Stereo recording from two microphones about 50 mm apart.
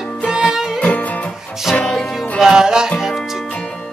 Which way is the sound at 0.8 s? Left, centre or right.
Left.